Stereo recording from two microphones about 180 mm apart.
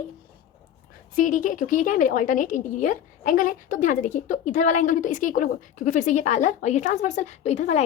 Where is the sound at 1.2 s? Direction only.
45° left (ahead or behind).